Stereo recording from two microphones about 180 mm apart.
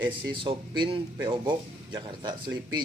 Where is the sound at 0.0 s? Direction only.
25° right (ahead or behind).